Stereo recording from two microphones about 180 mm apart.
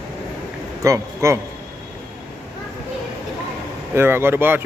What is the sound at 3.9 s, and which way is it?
Speech, 15° right (ahead or behind).